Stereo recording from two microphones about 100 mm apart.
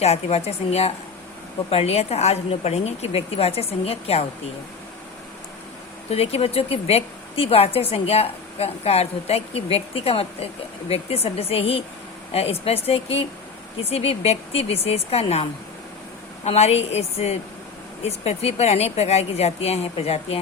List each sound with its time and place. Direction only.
0.0 s a woman's voice: 90° left
6.1 s a woman's voice: 85° left
12.3 s a woman's voice: 90° left